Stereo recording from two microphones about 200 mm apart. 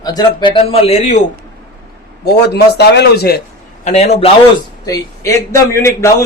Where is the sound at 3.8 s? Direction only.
35° left (ahead or behind).